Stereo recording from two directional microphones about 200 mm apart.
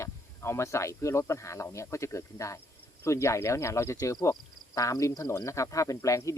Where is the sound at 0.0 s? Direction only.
15° left (ahead or behind).